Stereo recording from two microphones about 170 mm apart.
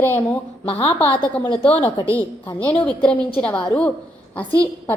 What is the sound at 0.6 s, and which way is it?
A woman's voice, 35° left (ahead or behind).